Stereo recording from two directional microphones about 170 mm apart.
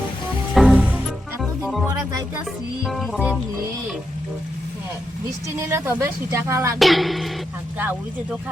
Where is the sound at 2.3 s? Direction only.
Centre (ahead or behind).